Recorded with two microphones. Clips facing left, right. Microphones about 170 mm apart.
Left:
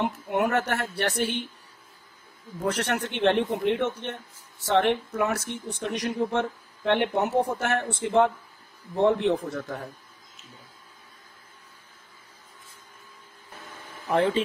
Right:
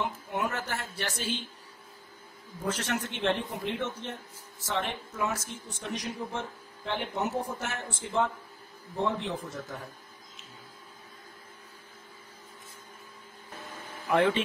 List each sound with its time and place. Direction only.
0.3 s speech: 65° left (ahead or behind)
2.6 s speech: 65° left (ahead or behind)
14.1 s speech: 30° left (ahead or behind)